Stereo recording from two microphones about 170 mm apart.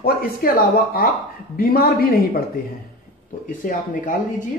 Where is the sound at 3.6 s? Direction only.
55° left (ahead or behind).